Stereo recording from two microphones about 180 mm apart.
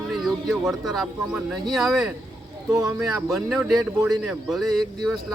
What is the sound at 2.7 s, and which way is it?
Speech, 20° right (ahead or behind).